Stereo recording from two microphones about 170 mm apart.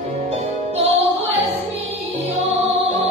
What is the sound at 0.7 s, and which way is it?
Music, 35° right (ahead or behind).